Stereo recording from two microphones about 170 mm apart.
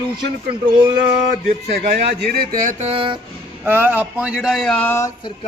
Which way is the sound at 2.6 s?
50° right (ahead or behind).